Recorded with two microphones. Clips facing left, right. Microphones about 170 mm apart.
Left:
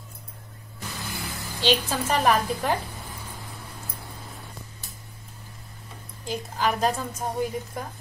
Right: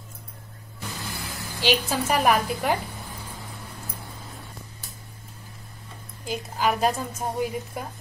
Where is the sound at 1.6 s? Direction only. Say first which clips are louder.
Even; 10° right (ahead or behind).